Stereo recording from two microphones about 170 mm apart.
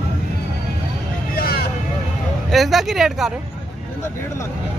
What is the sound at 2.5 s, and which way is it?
Speech, centre (ahead or behind).